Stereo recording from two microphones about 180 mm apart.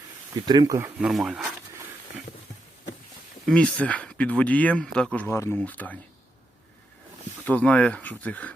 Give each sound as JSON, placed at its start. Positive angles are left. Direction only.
{"t": 0.4, "sound": "speech", "side_deg": -20}
{"t": 0.9, "sound": "speech", "side_deg": -5}
{"t": 3.4, "sound": "speech", "side_deg": 5}
{"t": 7.4, "sound": "speech", "side_deg": 5}